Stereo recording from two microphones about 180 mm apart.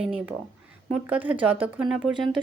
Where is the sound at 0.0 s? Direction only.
5° right (ahead or behind).